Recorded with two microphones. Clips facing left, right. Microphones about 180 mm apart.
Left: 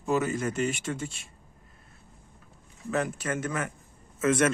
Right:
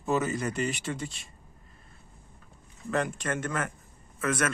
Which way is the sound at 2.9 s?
5° left (ahead or behind).